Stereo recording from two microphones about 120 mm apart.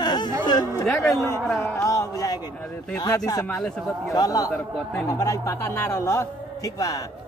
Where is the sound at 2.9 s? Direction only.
30° left (ahead or behind).